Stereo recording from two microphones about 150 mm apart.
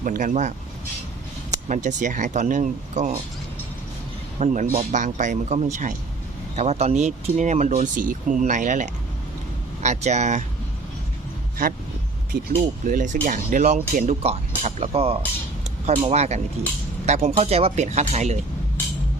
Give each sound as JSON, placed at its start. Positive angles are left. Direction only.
{"t": 0.0, "sound": "speech", "side_deg": -65}
{"t": 1.6, "sound": "speech", "side_deg": -55}
{"t": 4.4, "sound": "speech", "side_deg": -55}
{"t": 12.8, "sound": "speech", "side_deg": -60}